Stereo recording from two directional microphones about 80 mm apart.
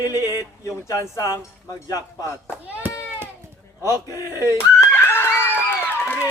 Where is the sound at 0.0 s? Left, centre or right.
Left.